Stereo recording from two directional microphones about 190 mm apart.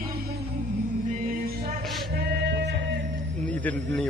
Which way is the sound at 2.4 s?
65° right (ahead or behind).